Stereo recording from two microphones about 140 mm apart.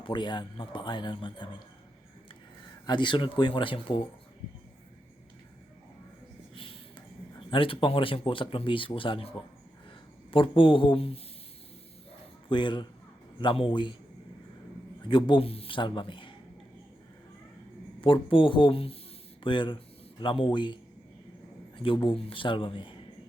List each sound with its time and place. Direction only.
0.0 s speech: 35° left (ahead or behind)
2.8 s speech: 35° left (ahead or behind)
7.3 s speech: 40° left (ahead or behind)
10.3 s speech: 40° left (ahead or behind)
12.5 s speech: 35° left (ahead or behind)
15.0 s speech: 35° left (ahead or behind)
18.0 s speech: 40° left (ahead or behind)
21.8 s speech: 35° left (ahead or behind)